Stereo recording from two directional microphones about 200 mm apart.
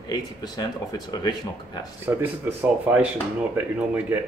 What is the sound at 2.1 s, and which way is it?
Speech, 10° right (ahead or behind).